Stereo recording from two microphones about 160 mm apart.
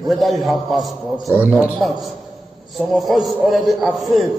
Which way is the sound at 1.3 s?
10° right (ahead or behind).